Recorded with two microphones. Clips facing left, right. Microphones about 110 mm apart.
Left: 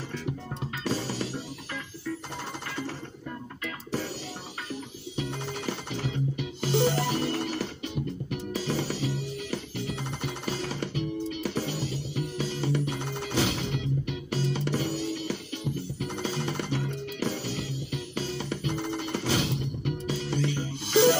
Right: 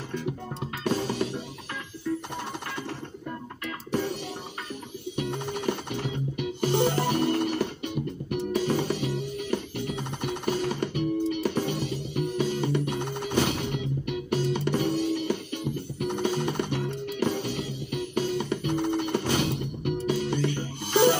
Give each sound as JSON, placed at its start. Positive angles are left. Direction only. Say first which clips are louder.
{"t": 0.8, "sound": "music", "louder": "right 4 dB", "side_deg": -55}
{"t": 5.5, "sound": "music", "louder": "right 4 dB", "side_deg": -55}